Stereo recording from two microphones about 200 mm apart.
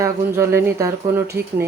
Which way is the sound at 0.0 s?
15° right (ahead or behind).